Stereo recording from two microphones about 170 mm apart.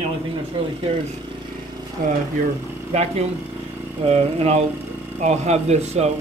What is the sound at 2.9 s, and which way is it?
Speech, 40° right (ahead or behind).